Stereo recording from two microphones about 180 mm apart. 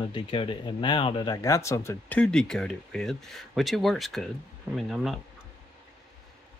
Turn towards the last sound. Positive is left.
turn(degrees=0)  # may be behind; listen again after turning